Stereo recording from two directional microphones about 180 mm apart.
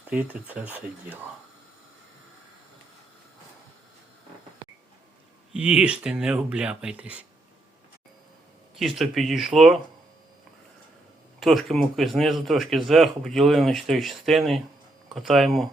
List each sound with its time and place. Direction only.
0.1 s speech: 10° right (ahead or behind)
5.5 s speech: 5° right (ahead or behind)
8.7 s speech: centre (ahead or behind)
11.3 s speech: centre (ahead or behind)